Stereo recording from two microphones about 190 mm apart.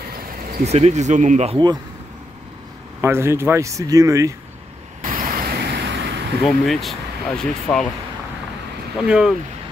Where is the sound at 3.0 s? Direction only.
15° right (ahead or behind).